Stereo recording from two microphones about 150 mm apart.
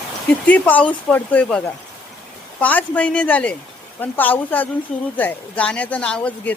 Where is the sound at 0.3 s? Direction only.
10° left (ahead or behind).